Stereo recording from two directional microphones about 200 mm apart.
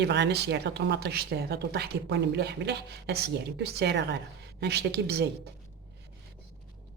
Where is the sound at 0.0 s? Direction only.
60° right (ahead or behind).